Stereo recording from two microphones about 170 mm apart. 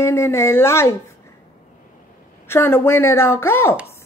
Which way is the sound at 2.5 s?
15° left (ahead or behind).